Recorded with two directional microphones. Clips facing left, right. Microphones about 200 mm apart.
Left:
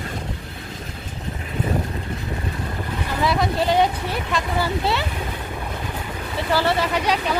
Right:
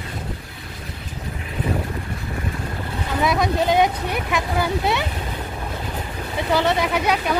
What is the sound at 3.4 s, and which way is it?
Speech, 15° right (ahead or behind).